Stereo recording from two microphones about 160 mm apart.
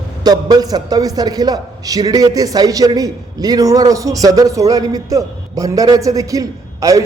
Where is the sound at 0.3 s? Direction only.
25° right (ahead or behind).